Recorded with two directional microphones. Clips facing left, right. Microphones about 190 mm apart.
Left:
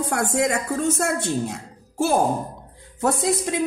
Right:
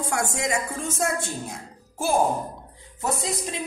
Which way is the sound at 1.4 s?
70° left (ahead or behind).